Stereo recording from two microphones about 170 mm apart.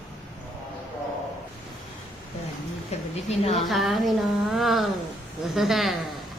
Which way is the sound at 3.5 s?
Centre (ahead or behind).